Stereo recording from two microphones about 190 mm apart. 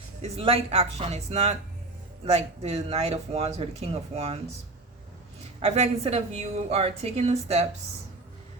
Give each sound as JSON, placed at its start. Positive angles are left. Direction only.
{"t": 0.2, "sound": "speech", "side_deg": -30}
{"t": 5.6, "sound": "speech", "side_deg": -30}